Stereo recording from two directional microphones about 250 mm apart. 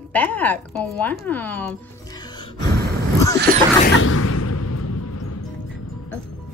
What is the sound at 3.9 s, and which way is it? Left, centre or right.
Music, left.